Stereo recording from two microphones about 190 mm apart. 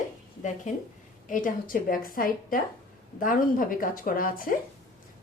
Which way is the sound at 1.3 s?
45° left (ahead or behind).